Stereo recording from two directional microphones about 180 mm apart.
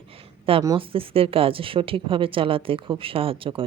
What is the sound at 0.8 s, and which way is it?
A woman's voice, 30° right (ahead or behind).